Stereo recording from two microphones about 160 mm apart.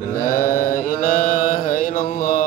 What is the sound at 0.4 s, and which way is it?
Mantra, 60° left (ahead or behind).